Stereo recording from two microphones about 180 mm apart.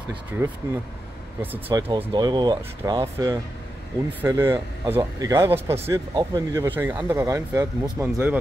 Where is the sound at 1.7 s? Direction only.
20° right (ahead or behind).